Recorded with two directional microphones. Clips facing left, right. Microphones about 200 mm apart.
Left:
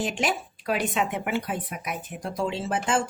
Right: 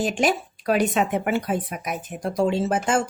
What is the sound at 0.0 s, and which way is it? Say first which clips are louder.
Speech: right 5 dB; 45° right (ahead or behind).